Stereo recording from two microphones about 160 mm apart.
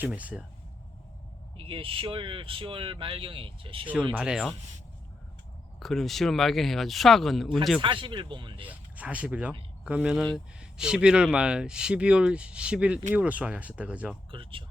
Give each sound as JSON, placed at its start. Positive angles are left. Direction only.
{"t": 0.0, "sound": "speech", "side_deg": -10}
{"t": 1.5, "sound": "speech", "side_deg": -35}
{"t": 4.1, "sound": "speech", "side_deg": -5}
{"t": 5.8, "sound": "speech", "side_deg": 0}
{"t": 7.8, "sound": "speech", "side_deg": -30}
{"t": 8.6, "sound": "speech", "side_deg": -10}
{"t": 14.3, "sound": "speech", "side_deg": -35}